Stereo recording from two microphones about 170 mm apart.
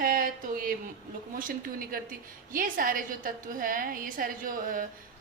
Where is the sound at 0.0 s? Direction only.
55° right (ahead or behind).